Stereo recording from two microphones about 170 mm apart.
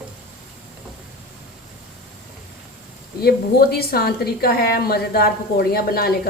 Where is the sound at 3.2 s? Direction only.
65° left (ahead or behind).